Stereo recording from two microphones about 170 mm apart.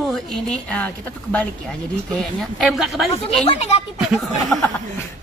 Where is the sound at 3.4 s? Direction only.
40° left (ahead or behind).